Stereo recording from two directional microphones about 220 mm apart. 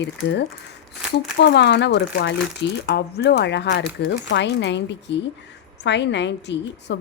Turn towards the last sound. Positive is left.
turn(degrees=55)  # may be behind; listen again after turning